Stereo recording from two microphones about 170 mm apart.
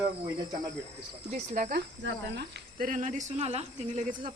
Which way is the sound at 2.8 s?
50° right (ahead or behind).